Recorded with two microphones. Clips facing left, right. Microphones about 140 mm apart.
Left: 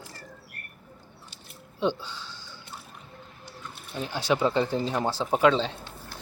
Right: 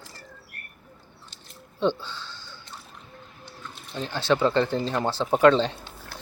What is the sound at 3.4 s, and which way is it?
Speech, 10° left (ahead or behind).